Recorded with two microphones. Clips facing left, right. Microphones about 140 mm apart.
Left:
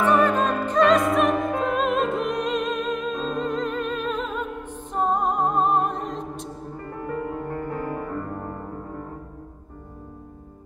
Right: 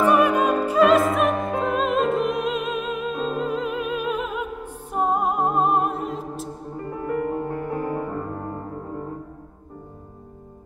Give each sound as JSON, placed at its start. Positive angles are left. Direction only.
{"t": 0.0, "sound": "music", "side_deg": -10}
{"t": 7.3, "sound": "music", "side_deg": -20}